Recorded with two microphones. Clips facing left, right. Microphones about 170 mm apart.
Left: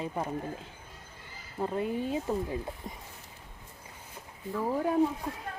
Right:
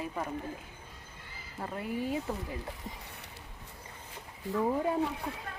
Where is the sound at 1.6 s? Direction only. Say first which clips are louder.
Left 4 dB; 20° left (ahead or behind).